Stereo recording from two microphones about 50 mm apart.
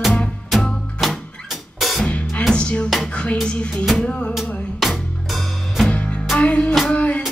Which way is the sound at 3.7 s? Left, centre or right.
Centre.